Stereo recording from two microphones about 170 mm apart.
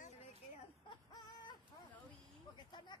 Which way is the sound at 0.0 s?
45° left (ahead or behind).